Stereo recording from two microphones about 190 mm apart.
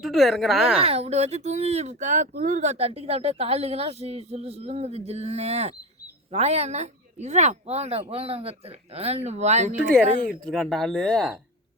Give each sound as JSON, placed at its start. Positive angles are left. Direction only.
{"t": 0.0, "sound": "speech", "side_deg": 0}
{"t": 0.8, "sound": "speech", "side_deg": -30}
{"t": 10.4, "sound": "speech", "side_deg": 0}